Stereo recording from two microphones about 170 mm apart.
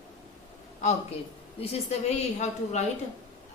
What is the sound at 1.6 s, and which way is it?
A woman's voice, 40° left (ahead or behind).